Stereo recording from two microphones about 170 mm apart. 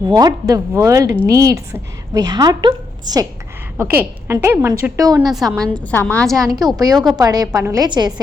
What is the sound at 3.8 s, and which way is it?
A woman's voice, 15° right (ahead or behind).